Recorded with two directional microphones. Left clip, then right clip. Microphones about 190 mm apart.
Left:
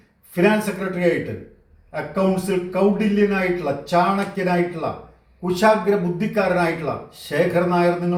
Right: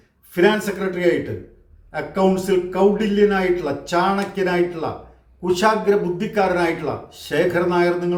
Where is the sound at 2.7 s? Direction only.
15° right (ahead or behind).